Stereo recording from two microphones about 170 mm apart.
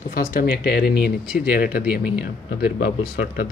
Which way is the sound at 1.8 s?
5° right (ahead or behind).